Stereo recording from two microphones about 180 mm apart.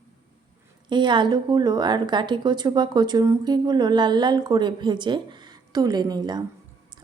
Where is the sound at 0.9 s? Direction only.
25° right (ahead or behind).